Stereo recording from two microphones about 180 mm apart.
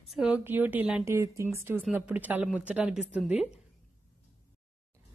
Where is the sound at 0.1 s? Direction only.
5° right (ahead or behind).